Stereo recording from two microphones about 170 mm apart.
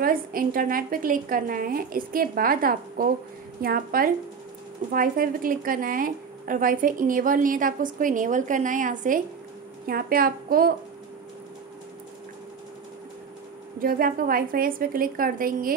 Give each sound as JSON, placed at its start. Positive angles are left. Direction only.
{"t": 0.0, "sound": "a woman's voice", "side_deg": -60}
{"t": 13.7, "sound": "a woman's voice", "side_deg": -55}